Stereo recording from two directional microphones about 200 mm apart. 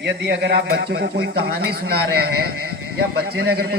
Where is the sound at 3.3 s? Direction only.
50° right (ahead or behind).